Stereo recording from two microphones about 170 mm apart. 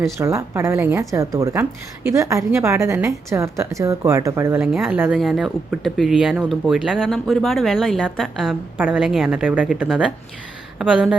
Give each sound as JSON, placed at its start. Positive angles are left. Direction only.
{"t": 0.0, "sound": "a woman's voice", "side_deg": -15}
{"t": 4.6, "sound": "a woman's voice", "side_deg": -5}
{"t": 5.1, "sound": "speech", "side_deg": 0}